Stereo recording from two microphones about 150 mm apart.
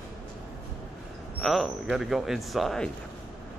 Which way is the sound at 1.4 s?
Centre (ahead or behind).